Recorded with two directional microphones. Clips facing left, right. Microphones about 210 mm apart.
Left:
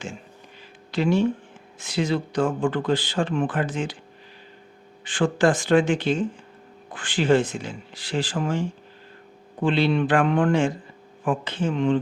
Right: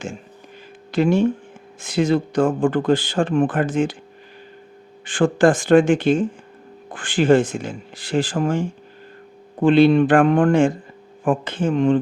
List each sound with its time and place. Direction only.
0.9 s speech: 50° right (ahead or behind)
5.0 s speech: 50° right (ahead or behind)